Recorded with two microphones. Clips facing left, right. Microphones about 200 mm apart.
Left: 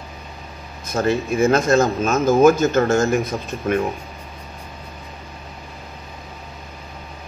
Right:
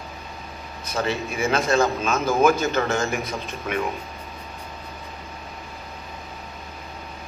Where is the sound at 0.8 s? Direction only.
45° left (ahead or behind).